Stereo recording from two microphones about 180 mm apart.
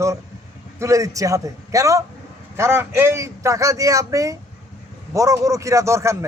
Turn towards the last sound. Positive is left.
turn(degrees=-15)  # may be behind; listen again after turning